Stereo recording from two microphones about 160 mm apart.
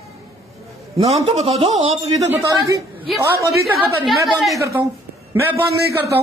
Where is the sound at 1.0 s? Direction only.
40° right (ahead or behind).